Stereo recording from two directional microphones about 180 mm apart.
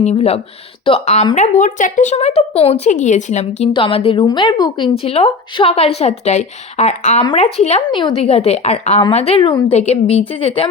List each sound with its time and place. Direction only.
0.0 s a woman's voice: 35° left (ahead or behind)
7.9 s a woman's voice: 25° left (ahead or behind)